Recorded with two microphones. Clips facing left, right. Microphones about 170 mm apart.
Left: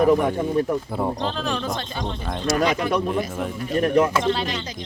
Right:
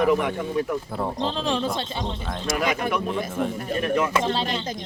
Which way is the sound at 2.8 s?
50° right (ahead or behind).